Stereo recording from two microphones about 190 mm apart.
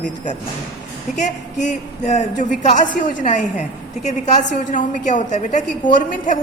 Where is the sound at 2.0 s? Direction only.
40° left (ahead or behind).